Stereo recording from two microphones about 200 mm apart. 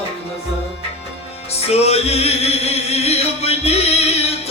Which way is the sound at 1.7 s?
30° left (ahead or behind).